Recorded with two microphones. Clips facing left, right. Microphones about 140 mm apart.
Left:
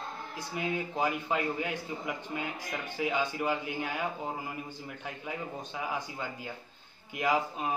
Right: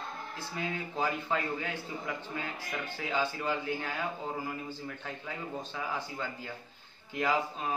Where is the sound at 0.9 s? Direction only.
15° left (ahead or behind).